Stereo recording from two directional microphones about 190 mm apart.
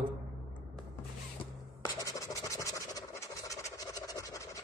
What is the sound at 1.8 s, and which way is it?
Scratch, 15° left (ahead or behind).